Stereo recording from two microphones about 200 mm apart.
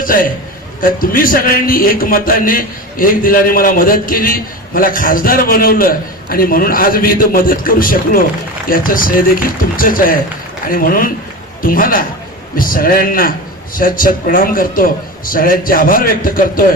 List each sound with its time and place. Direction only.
0.0 s a man's voice: 45° left (ahead or behind)